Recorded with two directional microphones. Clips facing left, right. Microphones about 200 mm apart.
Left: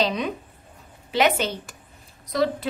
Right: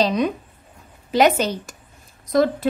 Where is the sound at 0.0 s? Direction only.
40° right (ahead or behind).